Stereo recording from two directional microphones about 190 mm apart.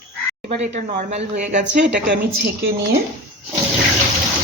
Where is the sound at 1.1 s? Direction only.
35° right (ahead or behind).